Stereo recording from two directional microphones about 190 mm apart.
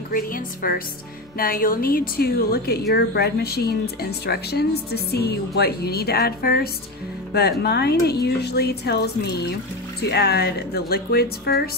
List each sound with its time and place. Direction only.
0.1 s a woman's voice: 50° left (ahead or behind)